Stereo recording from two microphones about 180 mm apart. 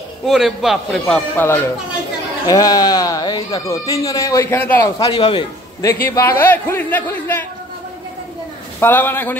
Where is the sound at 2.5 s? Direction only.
20° left (ahead or behind).